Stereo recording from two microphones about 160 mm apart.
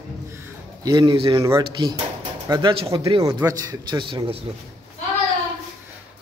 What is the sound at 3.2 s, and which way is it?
A man's voice, 20° right (ahead or behind).